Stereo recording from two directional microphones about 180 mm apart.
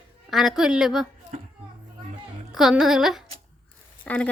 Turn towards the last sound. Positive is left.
turn(degrees=10)  # may be behind; listen again after turning